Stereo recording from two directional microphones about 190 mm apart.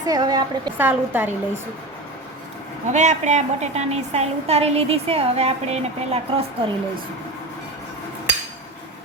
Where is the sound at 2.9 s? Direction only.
40° right (ahead or behind).